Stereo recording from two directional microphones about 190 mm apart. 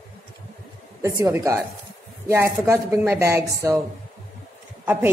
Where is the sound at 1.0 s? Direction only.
15° right (ahead or behind).